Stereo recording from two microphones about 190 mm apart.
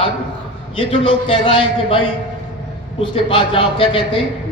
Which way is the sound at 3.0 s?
25° left (ahead or behind).